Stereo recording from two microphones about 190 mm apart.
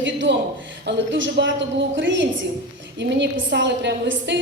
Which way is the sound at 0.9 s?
75° right (ahead or behind).